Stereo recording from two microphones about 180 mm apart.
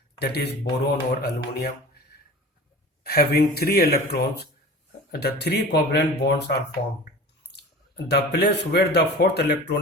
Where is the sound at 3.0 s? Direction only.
60° left (ahead or behind).